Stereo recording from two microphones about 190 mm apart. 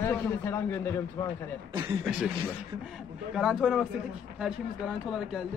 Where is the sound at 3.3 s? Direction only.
Centre (ahead or behind).